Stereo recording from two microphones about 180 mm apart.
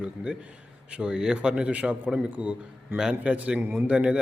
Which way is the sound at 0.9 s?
5° right (ahead or behind).